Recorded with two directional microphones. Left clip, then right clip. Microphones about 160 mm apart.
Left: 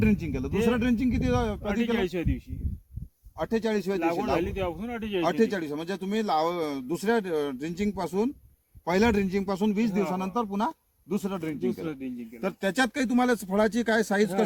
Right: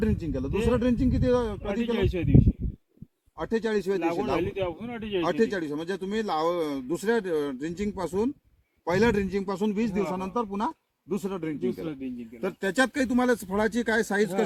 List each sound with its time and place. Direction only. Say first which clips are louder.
0.0 s speech: left 1 dB; 20° left (ahead or behind)
1.8 s speech: right 1 dB; 5° right (ahead or behind)
3.4 s speech: right 1 dB; 20° left (ahead or behind)
4.4 s speech: even; 5° right (ahead or behind)
5.3 s speech: right 2 dB; 20° left (ahead or behind)